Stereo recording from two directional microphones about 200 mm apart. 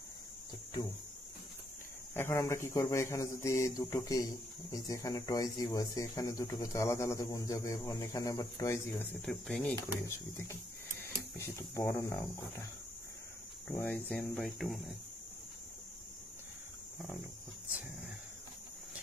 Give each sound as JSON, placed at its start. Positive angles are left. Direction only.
{"t": 2.1, "sound": "speech", "side_deg": 15}
{"t": 9.8, "sound": "speech", "side_deg": 15}
{"t": 13.7, "sound": "speech", "side_deg": 10}